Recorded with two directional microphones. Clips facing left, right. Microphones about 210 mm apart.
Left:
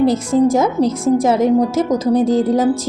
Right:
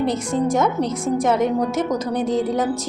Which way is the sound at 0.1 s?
90° left.